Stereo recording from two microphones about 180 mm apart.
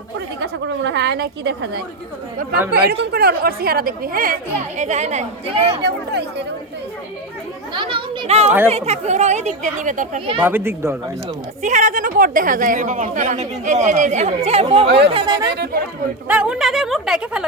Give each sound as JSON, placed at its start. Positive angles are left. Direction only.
{"t": 0.4, "sound": "a woman's voice", "side_deg": -75}
{"t": 4.8, "sound": "a woman's voice", "side_deg": -40}
{"t": 5.8, "sound": "a woman's voice", "side_deg": -70}
{"t": 7.7, "sound": "a child's voice", "side_deg": -25}
{"t": 10.2, "sound": "a woman's voice", "side_deg": -30}
{"t": 10.4, "sound": "speech", "side_deg": -10}
{"t": 11.6, "sound": "a woman's voice", "side_deg": -45}
{"t": 14.8, "sound": "a woman's voice", "side_deg": -70}
{"t": 15.1, "sound": "a child's voice", "side_deg": -25}
{"t": 15.5, "sound": "a woman's voice", "side_deg": -60}
{"t": 16.3, "sound": "a woman's voice", "side_deg": -5}